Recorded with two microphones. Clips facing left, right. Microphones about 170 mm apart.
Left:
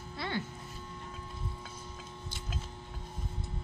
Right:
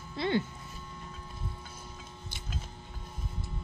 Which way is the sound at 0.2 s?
20° right (ahead or behind).